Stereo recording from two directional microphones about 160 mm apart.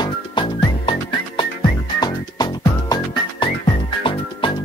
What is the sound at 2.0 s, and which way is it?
Music, 25° left (ahead or behind).